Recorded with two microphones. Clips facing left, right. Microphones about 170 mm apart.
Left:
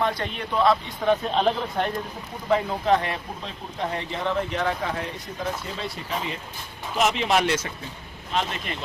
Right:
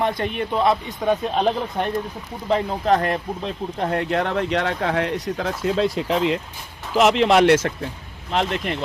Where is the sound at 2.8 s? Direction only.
45° right (ahead or behind).